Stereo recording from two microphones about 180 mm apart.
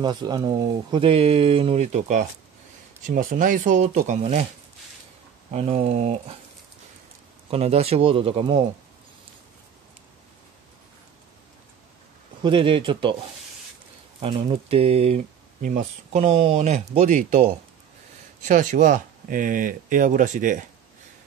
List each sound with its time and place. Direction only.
0.0 s speech: 25° right (ahead or behind); by 4.5 s 40° right (ahead or behind)
5.5 s speech: 40° right (ahead or behind)
7.5 s speech: 35° right (ahead or behind)
12.4 s speech: 30° right (ahead or behind)
14.2 s speech: 30° right (ahead or behind)